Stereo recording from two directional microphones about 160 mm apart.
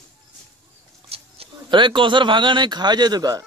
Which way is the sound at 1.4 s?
30° right (ahead or behind).